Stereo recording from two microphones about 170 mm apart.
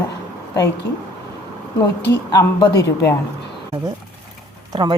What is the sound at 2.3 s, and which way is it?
Speech, 25° left (ahead or behind).